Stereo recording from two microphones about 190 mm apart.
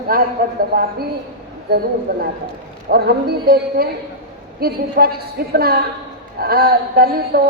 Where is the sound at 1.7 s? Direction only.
55° right (ahead or behind).